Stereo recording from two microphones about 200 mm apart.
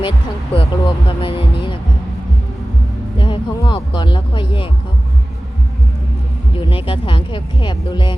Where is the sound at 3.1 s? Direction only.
25° left (ahead or behind).